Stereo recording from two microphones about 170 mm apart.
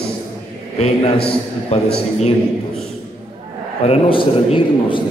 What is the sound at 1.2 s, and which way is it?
A man's voice, 35° left (ahead or behind).